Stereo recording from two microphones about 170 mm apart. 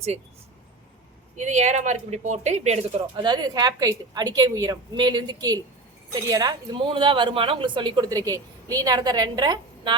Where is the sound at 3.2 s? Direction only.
25° right (ahead or behind).